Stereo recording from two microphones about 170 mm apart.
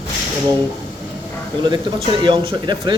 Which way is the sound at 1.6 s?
25° right (ahead or behind).